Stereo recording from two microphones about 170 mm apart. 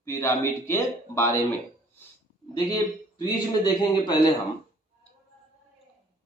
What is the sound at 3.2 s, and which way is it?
Speech, 25° left (ahead or behind).